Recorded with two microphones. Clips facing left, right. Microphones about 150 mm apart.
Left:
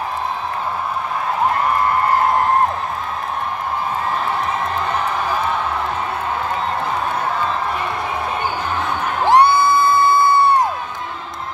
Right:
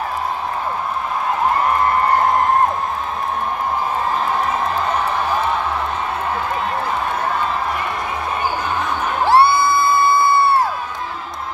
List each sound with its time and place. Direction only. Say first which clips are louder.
9.2 s crowd: left 1 dB; 15° left (ahead or behind)